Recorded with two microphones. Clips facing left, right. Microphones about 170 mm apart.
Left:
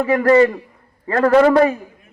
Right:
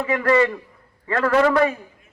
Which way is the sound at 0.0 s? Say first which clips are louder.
Left 6 dB; 30° left (ahead or behind).